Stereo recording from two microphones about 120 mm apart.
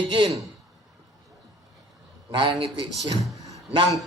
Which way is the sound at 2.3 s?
45° right (ahead or behind).